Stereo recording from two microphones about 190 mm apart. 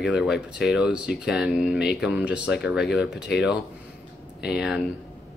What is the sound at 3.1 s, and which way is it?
Speech, 60° left (ahead or behind).